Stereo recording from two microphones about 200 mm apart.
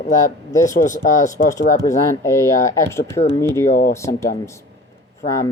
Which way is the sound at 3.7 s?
45° left (ahead or behind).